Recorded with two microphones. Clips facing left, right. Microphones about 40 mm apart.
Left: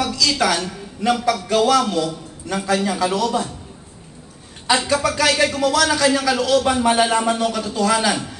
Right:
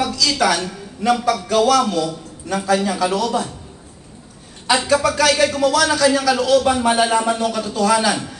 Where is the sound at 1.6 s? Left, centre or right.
Left.